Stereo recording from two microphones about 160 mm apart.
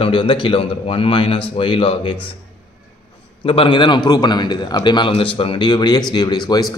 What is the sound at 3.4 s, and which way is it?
Speech, 30° left (ahead or behind).